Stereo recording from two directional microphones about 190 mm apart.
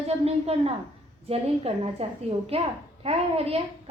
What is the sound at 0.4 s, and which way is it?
A woman's voice, 30° right (ahead or behind).